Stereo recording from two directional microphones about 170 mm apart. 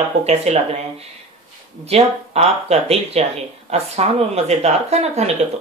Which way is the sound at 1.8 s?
40° right (ahead or behind).